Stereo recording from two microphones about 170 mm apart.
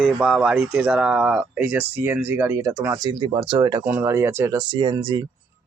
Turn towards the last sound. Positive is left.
turn(degrees=-25)  # may be behind; listen again after turning